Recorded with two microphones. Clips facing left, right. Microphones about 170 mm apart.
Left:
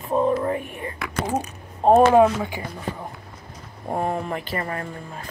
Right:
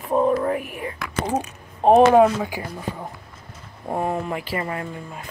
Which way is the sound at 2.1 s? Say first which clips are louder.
Right 1 dB; 5° right (ahead or behind).